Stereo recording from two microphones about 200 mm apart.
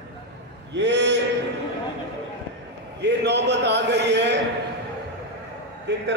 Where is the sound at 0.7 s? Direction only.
60° right (ahead or behind).